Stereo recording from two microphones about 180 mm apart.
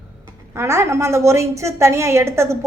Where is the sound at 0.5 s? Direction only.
15° right (ahead or behind).